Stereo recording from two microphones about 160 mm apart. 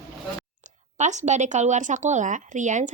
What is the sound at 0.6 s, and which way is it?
Speech, 45° right (ahead or behind).